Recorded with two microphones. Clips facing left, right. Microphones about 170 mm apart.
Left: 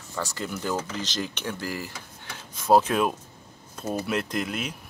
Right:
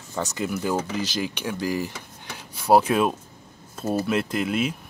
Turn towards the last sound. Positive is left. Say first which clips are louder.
# right 5 dB
turn(degrees=-5)  # may be behind; listen again after turning